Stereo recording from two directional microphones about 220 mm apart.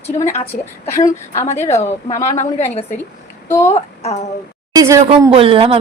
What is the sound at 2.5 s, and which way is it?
Speech, 30° left (ahead or behind).